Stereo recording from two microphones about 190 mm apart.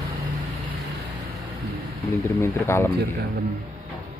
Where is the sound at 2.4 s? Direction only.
15° left (ahead or behind).